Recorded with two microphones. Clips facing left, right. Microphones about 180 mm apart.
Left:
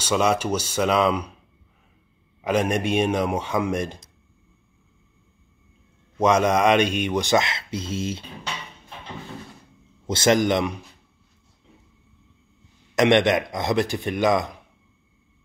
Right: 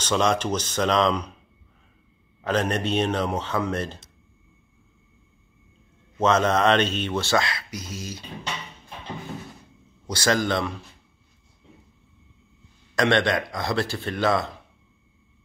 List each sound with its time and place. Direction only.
0.0 s speech: 10° left (ahead or behind)
2.4 s speech: 10° left (ahead or behind)
6.1 s speech: 10° left (ahead or behind)
10.0 s speech: 25° left (ahead or behind)
12.9 s speech: 20° left (ahead or behind)